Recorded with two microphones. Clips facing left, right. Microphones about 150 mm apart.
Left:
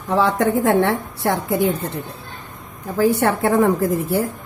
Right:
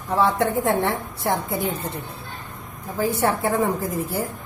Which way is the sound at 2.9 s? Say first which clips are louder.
Left 5 dB; 70° left (ahead or behind).